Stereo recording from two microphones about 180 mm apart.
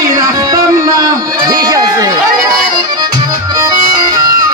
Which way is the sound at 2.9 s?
20° right (ahead or behind).